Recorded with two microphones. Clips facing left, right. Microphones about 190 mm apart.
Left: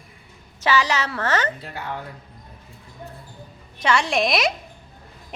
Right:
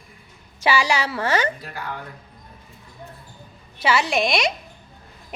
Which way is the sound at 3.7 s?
5° right (ahead or behind).